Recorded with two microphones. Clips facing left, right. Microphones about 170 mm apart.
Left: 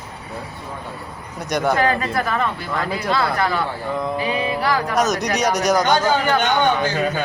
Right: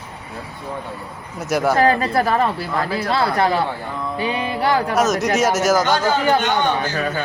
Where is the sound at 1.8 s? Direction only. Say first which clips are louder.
Right 3 dB; 35° right (ahead or behind).